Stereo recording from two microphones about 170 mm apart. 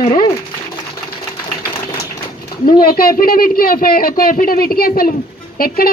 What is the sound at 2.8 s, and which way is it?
A woman's voice, 60° left (ahead or behind).